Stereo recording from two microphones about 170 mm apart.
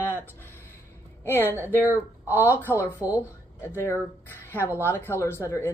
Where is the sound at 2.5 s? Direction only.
15° left (ahead or behind).